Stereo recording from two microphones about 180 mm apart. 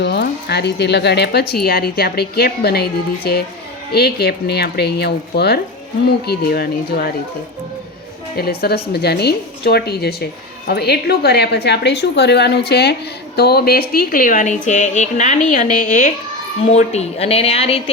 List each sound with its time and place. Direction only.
0.0 s speech: 70° left (ahead or behind)
8.4 s a woman's voice: 60° left (ahead or behind); by 17.9 s 35° left (ahead or behind)